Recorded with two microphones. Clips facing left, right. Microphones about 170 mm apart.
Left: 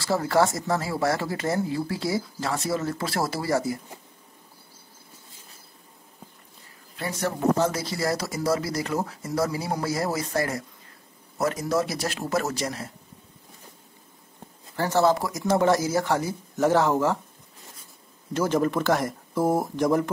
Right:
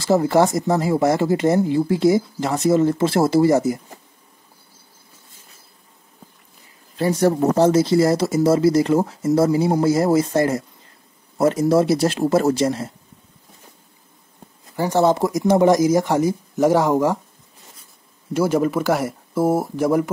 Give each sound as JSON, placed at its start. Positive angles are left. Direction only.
{"t": 0.0, "sound": "speech", "side_deg": -20}
{"t": 7.0, "sound": "speech", "side_deg": -35}
{"t": 14.8, "sound": "speech", "side_deg": -15}
{"t": 18.3, "sound": "speech", "side_deg": -10}